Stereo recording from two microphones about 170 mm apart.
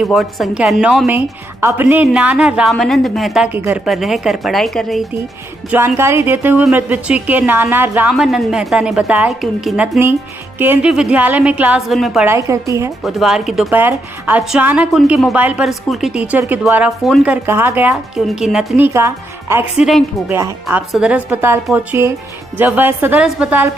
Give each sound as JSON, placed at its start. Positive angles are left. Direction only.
{"t": 0.0, "sound": "a woman's voice", "side_deg": 0}
{"t": 5.7, "sound": "a woman's voice", "side_deg": -15}
{"t": 8.1, "sound": "a woman's voice", "side_deg": 0}
{"t": 12.3, "sound": "a woman's voice", "side_deg": -20}
{"t": 13.0, "sound": "a woman's voice", "side_deg": 0}
{"t": 13.7, "sound": "a woman's voice", "side_deg": -15}
{"t": 18.8, "sound": "a woman's voice", "side_deg": -15}
{"t": 19.8, "sound": "a woman's voice", "side_deg": -5}
{"t": 20.3, "sound": "a woman's voice", "side_deg": -15}